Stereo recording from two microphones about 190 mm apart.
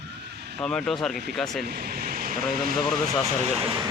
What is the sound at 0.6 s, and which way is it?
Speech, 5° left (ahead or behind).